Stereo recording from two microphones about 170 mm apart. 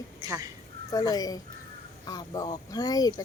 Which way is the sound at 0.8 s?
20° left (ahead or behind).